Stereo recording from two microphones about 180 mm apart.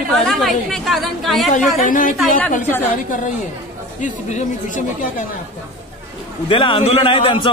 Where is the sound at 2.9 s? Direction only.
45° left (ahead or behind).